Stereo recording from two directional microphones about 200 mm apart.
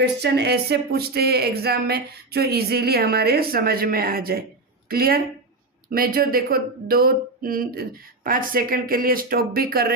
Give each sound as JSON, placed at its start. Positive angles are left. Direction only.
{"t": 0.0, "sound": "speech", "side_deg": -55}